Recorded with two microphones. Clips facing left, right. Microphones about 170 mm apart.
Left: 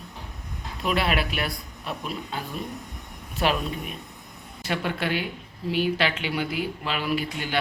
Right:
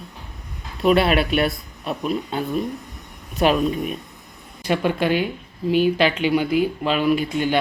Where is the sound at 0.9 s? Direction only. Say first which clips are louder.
Right 8 dB; 25° right (ahead or behind).